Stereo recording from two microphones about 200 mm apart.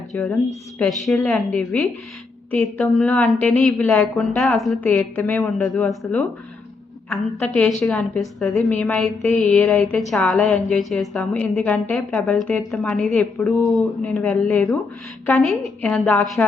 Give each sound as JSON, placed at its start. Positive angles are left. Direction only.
{"t": 0.1, "sound": "a woman's voice", "side_deg": 10}